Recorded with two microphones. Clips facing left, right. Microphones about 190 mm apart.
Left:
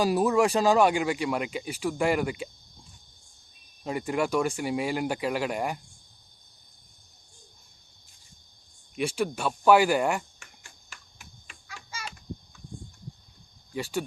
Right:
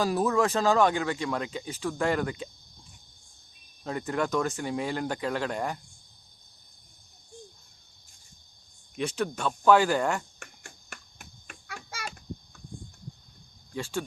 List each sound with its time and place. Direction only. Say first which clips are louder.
0.0 s speech: left 2 dB; 15° left (ahead or behind)
3.8 s speech: left 2 dB; 10° left (ahead or behind)
9.0 s speech: left 2 dB; 10° left (ahead or behind)
10.4 s a sound: right 6 dB; 55° right (ahead or behind)
13.7 s speech: left 2 dB; 15° left (ahead or behind)